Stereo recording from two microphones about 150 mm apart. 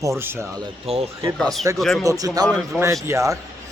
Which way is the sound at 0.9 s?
40° right (ahead or behind).